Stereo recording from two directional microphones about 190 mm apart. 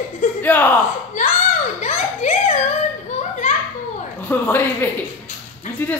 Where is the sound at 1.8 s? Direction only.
40° left (ahead or behind).